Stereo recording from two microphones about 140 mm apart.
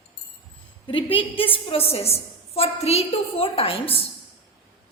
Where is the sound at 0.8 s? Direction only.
40° left (ahead or behind).